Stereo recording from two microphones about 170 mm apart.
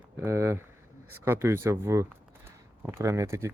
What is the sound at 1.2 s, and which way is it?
Speech, 15° right (ahead or behind).